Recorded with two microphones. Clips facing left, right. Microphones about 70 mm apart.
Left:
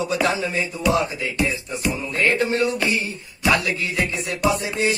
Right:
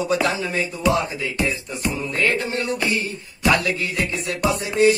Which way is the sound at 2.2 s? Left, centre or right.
Left.